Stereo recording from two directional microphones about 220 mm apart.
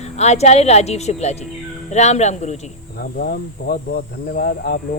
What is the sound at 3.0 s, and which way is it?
Speech, 45° left (ahead or behind).